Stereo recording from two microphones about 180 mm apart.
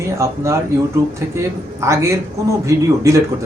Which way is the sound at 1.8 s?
15° right (ahead or behind).